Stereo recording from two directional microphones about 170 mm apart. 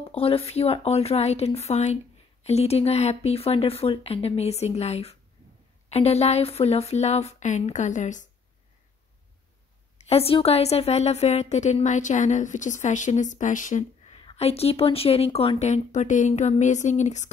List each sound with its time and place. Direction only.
0.0 s speech: 35° left (ahead or behind)
9.9 s a woman's voice: 35° left (ahead or behind)